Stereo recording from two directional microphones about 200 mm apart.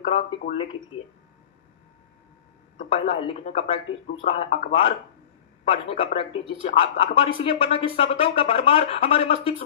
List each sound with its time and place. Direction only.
0.0 s speech: 30° left (ahead or behind)
3.1 s speech: 30° left (ahead or behind)